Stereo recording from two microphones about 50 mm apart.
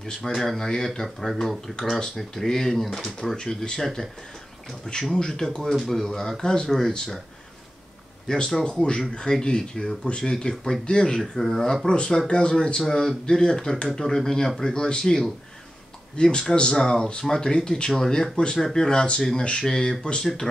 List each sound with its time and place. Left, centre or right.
0.0 s speech: centre
1.0 s speech: centre
1.8 s speech: centre
5.1 s speech: centre
8.3 s speech: centre
18.9 s speech: centre